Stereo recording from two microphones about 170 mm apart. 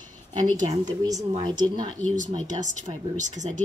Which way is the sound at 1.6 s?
10° left (ahead or behind).